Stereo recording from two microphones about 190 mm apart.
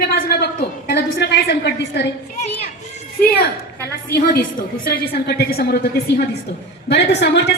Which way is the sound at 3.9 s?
55° left (ahead or behind).